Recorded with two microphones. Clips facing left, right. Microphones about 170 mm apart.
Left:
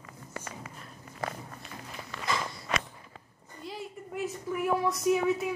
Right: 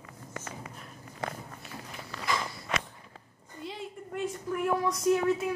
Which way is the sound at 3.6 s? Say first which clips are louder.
Right 1 dB; 5° left (ahead or behind).